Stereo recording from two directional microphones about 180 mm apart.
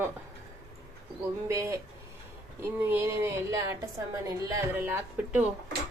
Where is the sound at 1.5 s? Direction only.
15° right (ahead or behind).